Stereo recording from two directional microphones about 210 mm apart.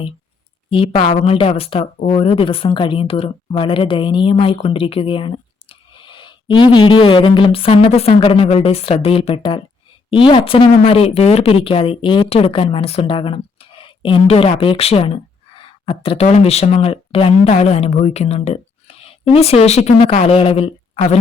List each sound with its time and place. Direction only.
0.7 s speech: 25° left (ahead or behind)